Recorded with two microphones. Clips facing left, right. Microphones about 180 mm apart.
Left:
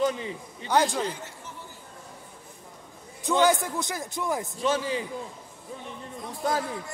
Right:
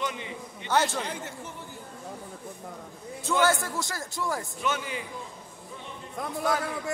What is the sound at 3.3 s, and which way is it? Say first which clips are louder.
A man's voice: left 3 dB; 15° left (ahead or behind).